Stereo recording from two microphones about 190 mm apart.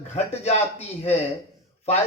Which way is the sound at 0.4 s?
35° left (ahead or behind).